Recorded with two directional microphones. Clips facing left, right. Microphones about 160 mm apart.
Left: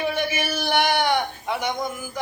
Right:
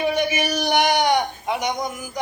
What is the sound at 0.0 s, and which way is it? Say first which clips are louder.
A man's voice: right 3 dB; 15° right (ahead or behind).